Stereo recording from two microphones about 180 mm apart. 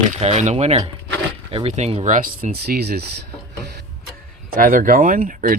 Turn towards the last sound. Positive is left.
turn(degrees=-50)  # may be behind; listen again after turning